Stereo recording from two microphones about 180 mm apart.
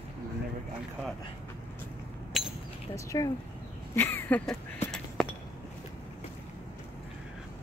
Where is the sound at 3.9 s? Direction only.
10° left (ahead or behind).